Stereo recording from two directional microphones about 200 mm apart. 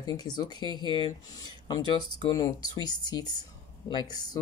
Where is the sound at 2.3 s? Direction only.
20° left (ahead or behind).